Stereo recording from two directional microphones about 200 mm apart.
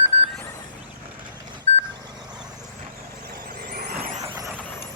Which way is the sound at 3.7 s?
50° right (ahead or behind).